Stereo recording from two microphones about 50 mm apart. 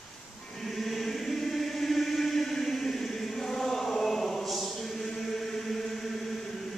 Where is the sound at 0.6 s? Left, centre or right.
Centre.